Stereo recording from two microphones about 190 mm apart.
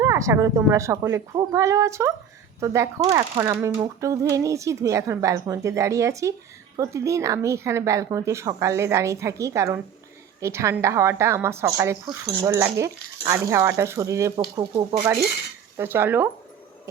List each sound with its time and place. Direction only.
0.0 s speech: 15° right (ahead or behind)